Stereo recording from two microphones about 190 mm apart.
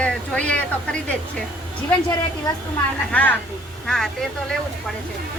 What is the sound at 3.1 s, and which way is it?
A woman's voice, 10° left (ahead or behind).